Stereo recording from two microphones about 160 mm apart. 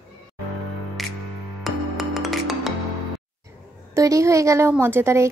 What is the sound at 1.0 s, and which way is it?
Music, centre (ahead or behind).